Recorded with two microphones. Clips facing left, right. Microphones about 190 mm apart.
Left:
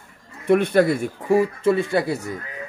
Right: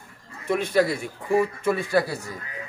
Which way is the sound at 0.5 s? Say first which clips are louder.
Left 5 dB; 60° left (ahead or behind).